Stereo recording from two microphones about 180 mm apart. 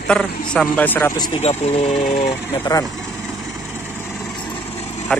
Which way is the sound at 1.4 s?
35° left (ahead or behind).